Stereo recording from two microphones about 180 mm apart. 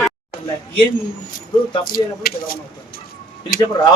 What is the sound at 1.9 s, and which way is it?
Speech, 55° left (ahead or behind).